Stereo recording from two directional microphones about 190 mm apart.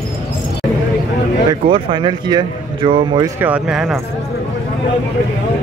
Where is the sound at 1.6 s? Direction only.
25° right (ahead or behind).